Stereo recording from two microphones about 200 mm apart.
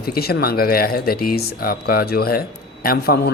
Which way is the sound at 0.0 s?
50° left (ahead or behind).